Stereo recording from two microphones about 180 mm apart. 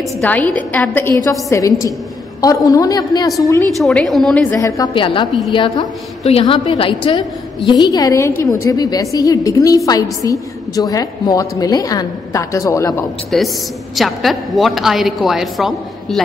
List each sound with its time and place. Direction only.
0.2 s a woman's voice: 10° left (ahead or behind)
3.8 s a woman's voice: centre (ahead or behind)
4.6 s a woman's voice: 20° left (ahead or behind)
13.3 s a woman's voice: 5° left (ahead or behind)